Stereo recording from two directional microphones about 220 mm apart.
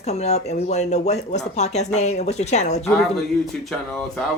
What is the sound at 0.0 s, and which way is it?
Speech, 30° left (ahead or behind).